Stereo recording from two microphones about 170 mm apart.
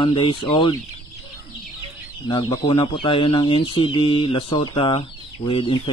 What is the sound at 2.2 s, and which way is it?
Speech, 25° left (ahead or behind).